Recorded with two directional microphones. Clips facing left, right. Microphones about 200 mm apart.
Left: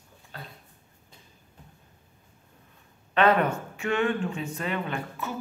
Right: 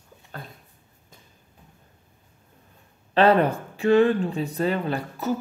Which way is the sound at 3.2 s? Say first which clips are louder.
Right 4 dB; 30° right (ahead or behind).